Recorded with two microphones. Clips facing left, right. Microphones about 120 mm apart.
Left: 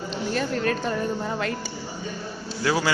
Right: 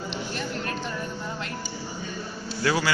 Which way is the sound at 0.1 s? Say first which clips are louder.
Left 9 dB; 45° left (ahead or behind).